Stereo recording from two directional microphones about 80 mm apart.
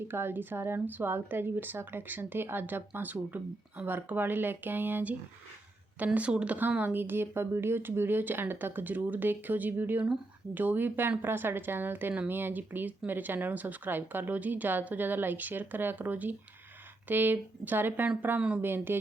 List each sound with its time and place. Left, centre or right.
0.1 s speech: right
6.1 s speech: centre